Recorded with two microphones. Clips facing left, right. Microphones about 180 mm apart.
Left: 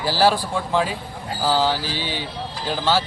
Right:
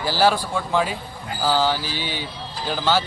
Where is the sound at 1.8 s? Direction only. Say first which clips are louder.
Left 1 dB; 30° left (ahead or behind).